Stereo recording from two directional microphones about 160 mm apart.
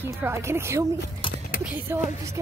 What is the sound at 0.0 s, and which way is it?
Speech, 15° right (ahead or behind).